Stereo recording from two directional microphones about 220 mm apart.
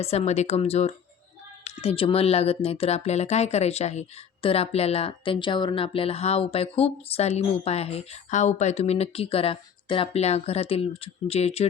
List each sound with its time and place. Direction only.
0.0 s speech: 30° left (ahead or behind)